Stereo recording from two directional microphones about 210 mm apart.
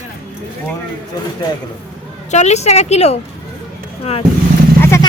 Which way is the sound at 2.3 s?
30° left (ahead or behind).